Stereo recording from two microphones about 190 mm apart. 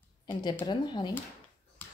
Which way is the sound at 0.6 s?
25° left (ahead or behind).